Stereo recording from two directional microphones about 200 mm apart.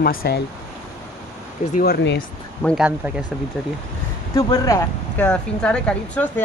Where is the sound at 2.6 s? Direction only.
5° left (ahead or behind).